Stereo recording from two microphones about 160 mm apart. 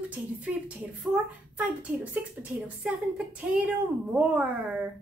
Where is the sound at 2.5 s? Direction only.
10° right (ahead or behind).